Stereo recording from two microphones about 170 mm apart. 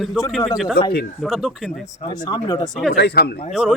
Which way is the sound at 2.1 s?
25° left (ahead or behind).